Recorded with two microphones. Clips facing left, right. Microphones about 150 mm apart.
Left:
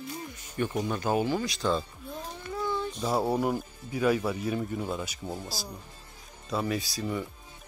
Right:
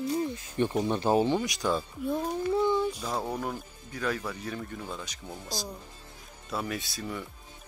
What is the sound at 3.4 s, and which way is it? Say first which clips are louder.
Speech: left 6 dB; 10° left (ahead or behind).